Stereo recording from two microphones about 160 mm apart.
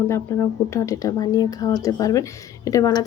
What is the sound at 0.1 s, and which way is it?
Speech, 15° left (ahead or behind).